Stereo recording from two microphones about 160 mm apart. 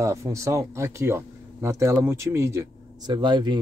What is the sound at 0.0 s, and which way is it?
Speech, 20° right (ahead or behind).